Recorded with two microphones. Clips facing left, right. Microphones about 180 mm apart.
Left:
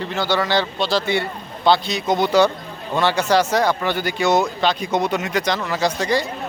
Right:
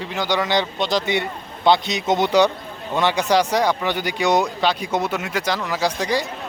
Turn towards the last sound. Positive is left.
turn(degrees=-10)  # may be behind; listen again after turning